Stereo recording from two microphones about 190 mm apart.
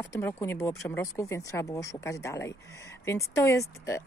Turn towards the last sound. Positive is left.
turn(degrees=15)  # may be behind; listen again after turning